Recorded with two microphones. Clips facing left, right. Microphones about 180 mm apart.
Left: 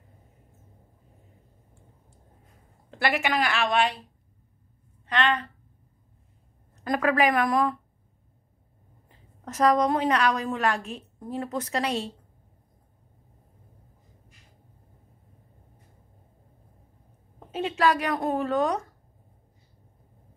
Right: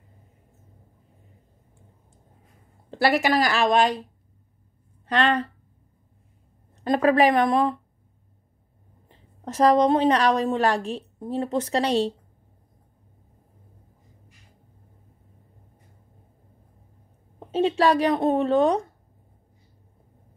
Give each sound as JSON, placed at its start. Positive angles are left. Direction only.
{"t": 2.9, "sound": "a woman's voice", "side_deg": -35}
{"t": 5.0, "sound": "a woman's voice", "side_deg": -40}
{"t": 6.8, "sound": "a woman's voice", "side_deg": -30}
{"t": 9.1, "sound": "a woman's voice", "side_deg": -30}
{"t": 17.5, "sound": "a woman's voice", "side_deg": -30}